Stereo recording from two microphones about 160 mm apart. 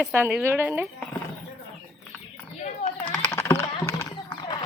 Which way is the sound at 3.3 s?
20° left (ahead or behind).